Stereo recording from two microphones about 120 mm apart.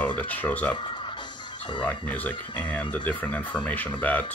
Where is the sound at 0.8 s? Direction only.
40° left (ahead or behind).